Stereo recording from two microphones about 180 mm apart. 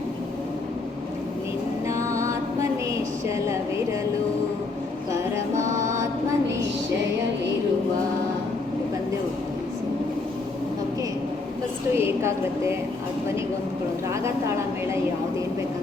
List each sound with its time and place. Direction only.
1.9 s music: 15° right (ahead or behind)
3.2 s a sound: 15° right (ahead or behind)
5.8 s mantra: 15° right (ahead or behind)
11.9 s a woman's voice: 15° right (ahead or behind)